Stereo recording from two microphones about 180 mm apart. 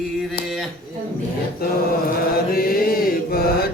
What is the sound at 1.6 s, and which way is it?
Chant, 55° left (ahead or behind).